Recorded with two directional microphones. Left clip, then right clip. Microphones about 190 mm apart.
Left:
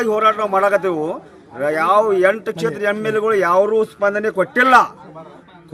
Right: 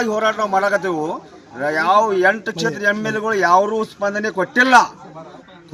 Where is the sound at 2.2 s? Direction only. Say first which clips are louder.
Left 1 dB; 30° left (ahead or behind).